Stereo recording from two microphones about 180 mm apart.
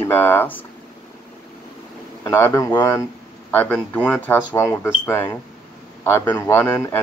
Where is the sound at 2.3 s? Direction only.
15° left (ahead or behind).